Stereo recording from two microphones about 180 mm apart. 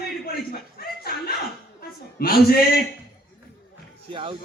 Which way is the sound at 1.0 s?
60° left (ahead or behind).